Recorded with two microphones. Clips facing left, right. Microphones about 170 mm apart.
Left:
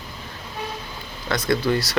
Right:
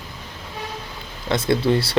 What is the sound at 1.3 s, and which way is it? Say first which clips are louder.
Speech: right 2 dB; 25° right (ahead or behind).